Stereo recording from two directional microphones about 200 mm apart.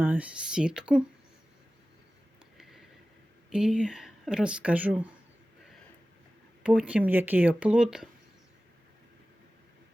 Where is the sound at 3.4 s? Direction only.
5° right (ahead or behind).